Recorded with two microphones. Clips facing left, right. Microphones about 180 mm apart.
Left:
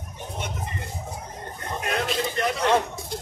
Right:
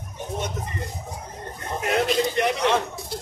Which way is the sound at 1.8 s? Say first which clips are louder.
Right 5 dB; 25° right (ahead or behind).